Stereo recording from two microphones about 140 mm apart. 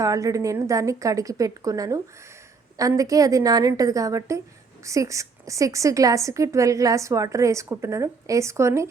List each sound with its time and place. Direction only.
0.0 s a woman's voice: 25° right (ahead or behind)